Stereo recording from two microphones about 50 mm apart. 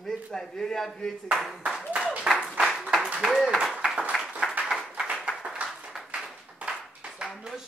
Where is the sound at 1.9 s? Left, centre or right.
Centre.